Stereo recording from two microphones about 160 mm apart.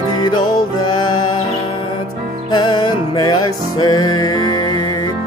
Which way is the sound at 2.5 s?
30° left (ahead or behind).